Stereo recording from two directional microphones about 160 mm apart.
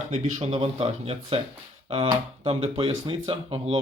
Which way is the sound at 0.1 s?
45° right (ahead or behind).